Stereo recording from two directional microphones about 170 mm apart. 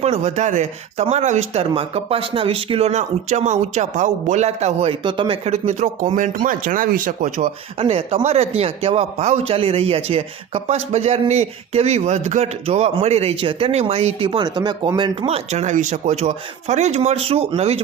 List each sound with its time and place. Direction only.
0.0 s speech: 40° right (ahead or behind)
5.5 s speech: 45° right (ahead or behind); by 15.3 s 25° right (ahead or behind)
15.3 s speech: 40° right (ahead or behind)